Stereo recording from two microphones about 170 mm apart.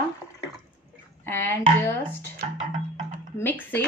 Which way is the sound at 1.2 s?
15° left (ahead or behind).